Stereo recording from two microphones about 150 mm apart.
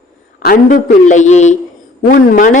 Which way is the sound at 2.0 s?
70° left (ahead or behind).